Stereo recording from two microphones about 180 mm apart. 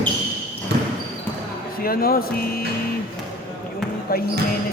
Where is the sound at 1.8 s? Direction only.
55° left (ahead or behind).